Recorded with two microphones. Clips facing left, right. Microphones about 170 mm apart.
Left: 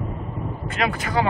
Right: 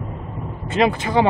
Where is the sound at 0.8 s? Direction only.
25° right (ahead or behind).